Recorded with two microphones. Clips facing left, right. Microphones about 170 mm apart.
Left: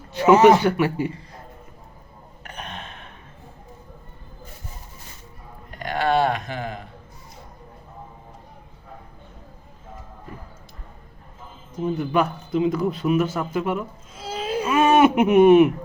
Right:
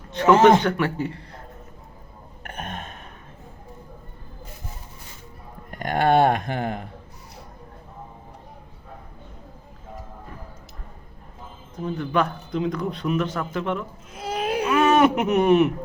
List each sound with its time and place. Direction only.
0.1 s speech: 5° left (ahead or behind)
2.4 s gasp: 50° right (ahead or behind)
5.7 s speech: 50° right (ahead or behind)
11.7 s speech: 10° left (ahead or behind)
14.1 s a sound: 65° right (ahead or behind)
14.7 s a man's voice: 5° left (ahead or behind)